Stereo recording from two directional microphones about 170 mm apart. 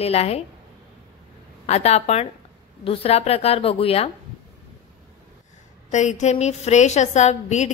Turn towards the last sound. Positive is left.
turn(degrees=45)  # may be behind; listen again after turning